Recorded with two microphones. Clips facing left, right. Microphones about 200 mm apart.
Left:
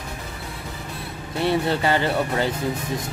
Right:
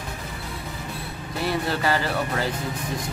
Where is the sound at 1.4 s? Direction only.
25° left (ahead or behind).